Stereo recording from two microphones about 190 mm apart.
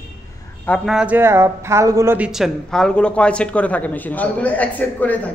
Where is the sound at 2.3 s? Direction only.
Centre (ahead or behind).